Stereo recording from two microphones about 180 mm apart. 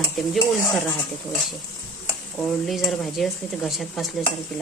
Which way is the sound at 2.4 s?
Centre (ahead or behind).